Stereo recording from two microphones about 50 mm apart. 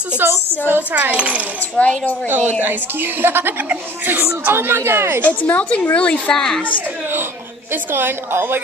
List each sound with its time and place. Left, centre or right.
0.2 s speech: right
0.9 s a child's voice: right
1.8 s a woman's voice: left
2.2 s speech: right
5.2 s a woman's voice: left
6.3 s a woman's voice: centre
7.7 s speech: right